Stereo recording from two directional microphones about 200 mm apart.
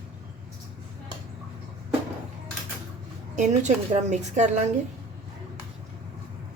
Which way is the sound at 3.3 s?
35° right (ahead or behind).